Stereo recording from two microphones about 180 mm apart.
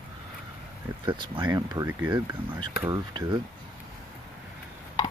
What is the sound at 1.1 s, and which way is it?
Speech, 25° right (ahead or behind).